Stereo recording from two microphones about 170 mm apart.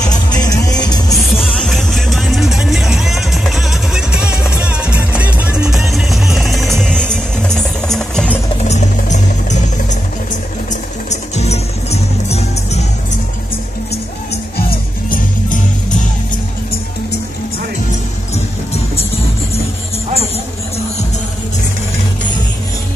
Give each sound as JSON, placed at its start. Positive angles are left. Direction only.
{"t": 0.3, "sound": "music", "side_deg": 20}
{"t": 1.1, "sound": "music", "side_deg": 0}
{"t": 8.6, "sound": "music", "side_deg": 45}
{"t": 11.1, "sound": "music", "side_deg": 40}
{"t": 14.3, "sound": "music", "side_deg": 60}